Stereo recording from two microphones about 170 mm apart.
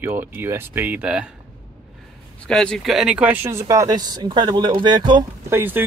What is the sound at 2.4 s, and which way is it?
Speech, 5° left (ahead or behind).